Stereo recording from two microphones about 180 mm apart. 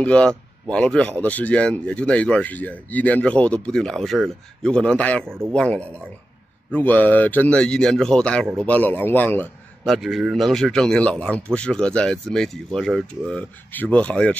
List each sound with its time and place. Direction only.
0.0 s a man's voice: 5° left (ahead or behind)
9.9 s speech: centre (ahead or behind)